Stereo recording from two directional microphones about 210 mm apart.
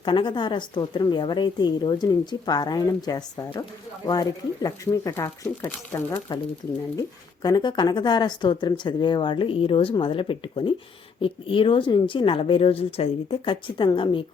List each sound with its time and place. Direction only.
0.0 s speech: 25° left (ahead or behind)
7.4 s speech: 20° left (ahead or behind)